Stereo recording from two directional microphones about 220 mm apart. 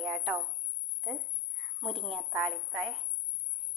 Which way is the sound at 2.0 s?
Centre (ahead or behind).